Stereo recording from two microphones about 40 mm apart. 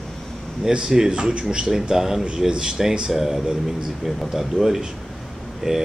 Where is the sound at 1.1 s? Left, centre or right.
Right.